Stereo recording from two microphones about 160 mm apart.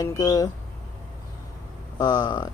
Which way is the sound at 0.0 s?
25° left (ahead or behind).